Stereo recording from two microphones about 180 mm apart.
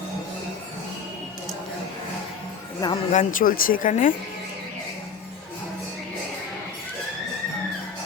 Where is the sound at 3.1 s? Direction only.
45° left (ahead or behind).